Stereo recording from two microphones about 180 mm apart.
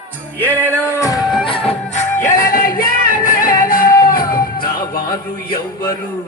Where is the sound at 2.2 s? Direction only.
45° left (ahead or behind).